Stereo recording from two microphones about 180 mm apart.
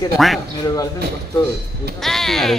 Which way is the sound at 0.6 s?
20° left (ahead or behind).